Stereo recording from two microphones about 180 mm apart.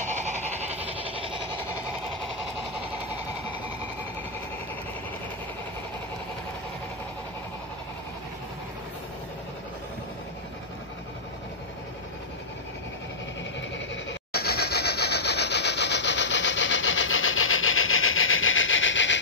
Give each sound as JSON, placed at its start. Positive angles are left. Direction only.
{"t": 0.0, "sound": "goat", "side_deg": -40}
{"t": 14.3, "sound": "rub", "side_deg": 60}